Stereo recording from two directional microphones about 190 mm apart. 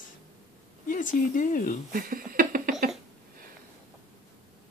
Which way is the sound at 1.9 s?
50° right (ahead or behind).